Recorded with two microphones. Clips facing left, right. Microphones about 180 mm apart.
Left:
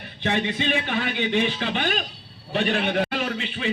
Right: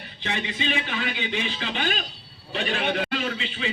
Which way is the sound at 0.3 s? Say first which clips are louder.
Left 5 dB; 50° left (ahead or behind).